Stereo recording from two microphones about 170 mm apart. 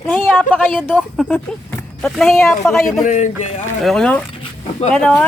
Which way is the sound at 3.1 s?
45° left (ahead or behind).